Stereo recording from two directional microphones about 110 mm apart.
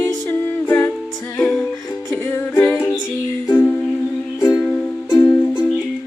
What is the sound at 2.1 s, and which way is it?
Music, 20° left (ahead or behind).